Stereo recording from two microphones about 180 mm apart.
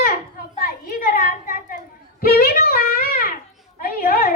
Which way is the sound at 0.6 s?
50° left (ahead or behind).